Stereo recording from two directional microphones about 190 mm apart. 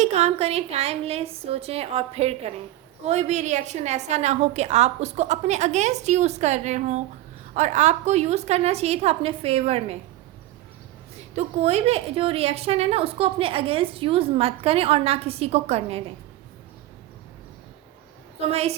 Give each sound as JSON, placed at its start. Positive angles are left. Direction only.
{"t": 0.0, "sound": "a woman's voice", "side_deg": -35}
{"t": 11.3, "sound": "a woman's voice", "side_deg": -35}